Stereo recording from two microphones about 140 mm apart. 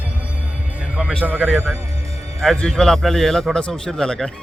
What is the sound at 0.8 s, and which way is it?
Speech, 10° right (ahead or behind).